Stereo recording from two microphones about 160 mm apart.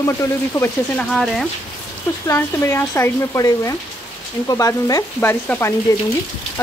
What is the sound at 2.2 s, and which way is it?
Speech, 15° left (ahead or behind).